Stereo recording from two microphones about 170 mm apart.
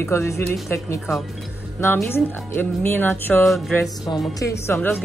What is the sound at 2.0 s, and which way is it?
A woman's voice, 15° left (ahead or behind).